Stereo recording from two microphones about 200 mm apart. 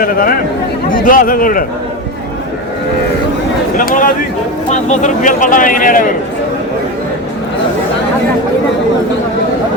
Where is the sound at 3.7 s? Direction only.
40° left (ahead or behind).